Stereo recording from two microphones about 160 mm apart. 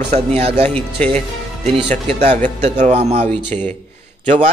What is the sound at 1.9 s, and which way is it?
A man's voice, 50° right (ahead or behind).